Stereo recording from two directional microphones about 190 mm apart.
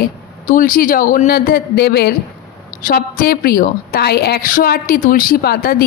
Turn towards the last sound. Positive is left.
turn(degrees=50)  # may be behind; listen again after turning